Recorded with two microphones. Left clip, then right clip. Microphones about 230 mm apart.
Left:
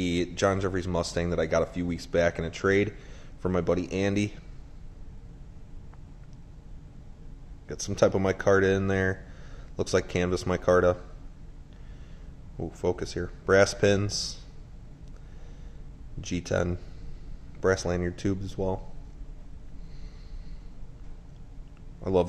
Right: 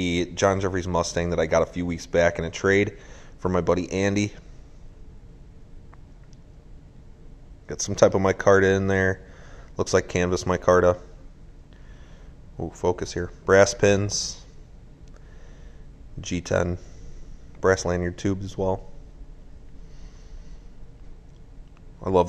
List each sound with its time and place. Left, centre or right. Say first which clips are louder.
0.0 s speech: right 4 dB; centre
7.6 s speech: right 5 dB; centre
12.5 s speech: right 4 dB; centre
16.2 s speech: right 4 dB; centre
22.0 s speech: right 4 dB; centre